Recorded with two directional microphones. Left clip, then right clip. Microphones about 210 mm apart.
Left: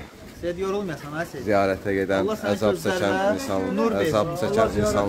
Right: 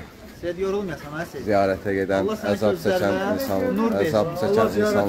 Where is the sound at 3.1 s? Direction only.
50° left (ahead or behind).